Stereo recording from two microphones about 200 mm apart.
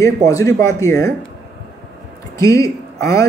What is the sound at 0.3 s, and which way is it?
Speech, 15° left (ahead or behind).